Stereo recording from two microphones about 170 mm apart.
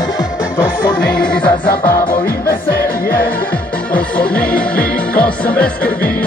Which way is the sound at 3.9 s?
5° left (ahead or behind).